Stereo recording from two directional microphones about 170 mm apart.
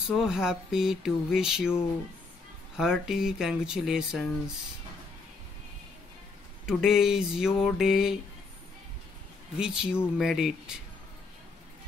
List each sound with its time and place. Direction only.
0.1 s speech: centre (ahead or behind)
2.8 s speech: 5° right (ahead or behind)
6.6 s speech: 5° right (ahead or behind)
9.6 s speech: 5° right (ahead or behind)